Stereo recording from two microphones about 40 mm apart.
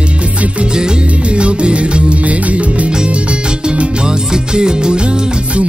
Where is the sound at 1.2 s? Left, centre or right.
Right.